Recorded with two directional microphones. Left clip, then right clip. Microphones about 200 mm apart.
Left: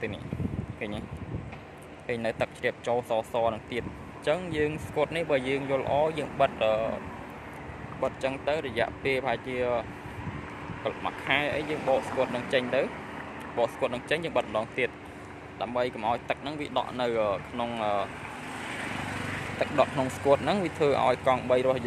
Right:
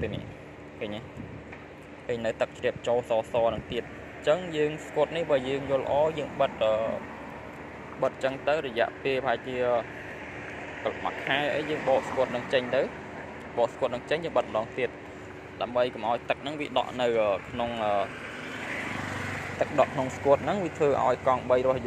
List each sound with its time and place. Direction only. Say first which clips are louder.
0.7 s a sound: right 2 dB; 15° left (ahead or behind)
2.0 s speech: right 1 dB; 15° left (ahead or behind)
8.0 s speech: right 2 dB; 5° left (ahead or behind)
19.6 s speech: right 1 dB; 10° left (ahead or behind)